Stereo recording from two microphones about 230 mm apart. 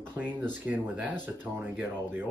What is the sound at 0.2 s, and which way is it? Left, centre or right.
Speech, centre.